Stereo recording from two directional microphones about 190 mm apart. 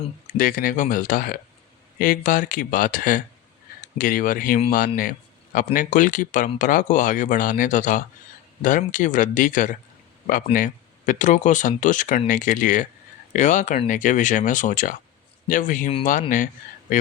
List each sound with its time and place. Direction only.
0.3 s speech: 45° left (ahead or behind)
16.9 s speech: 45° left (ahead or behind)